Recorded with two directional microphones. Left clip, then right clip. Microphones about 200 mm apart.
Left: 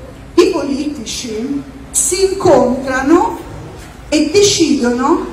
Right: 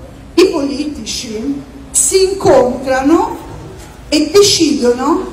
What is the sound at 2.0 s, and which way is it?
A woman's voice, 40° right (ahead or behind).